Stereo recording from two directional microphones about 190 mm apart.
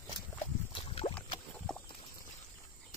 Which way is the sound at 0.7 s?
30° left (ahead or behind).